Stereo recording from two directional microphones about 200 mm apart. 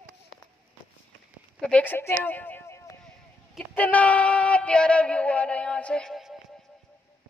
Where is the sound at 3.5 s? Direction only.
10° left (ahead or behind).